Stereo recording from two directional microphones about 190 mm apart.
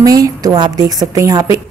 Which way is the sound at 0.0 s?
20° right (ahead or behind).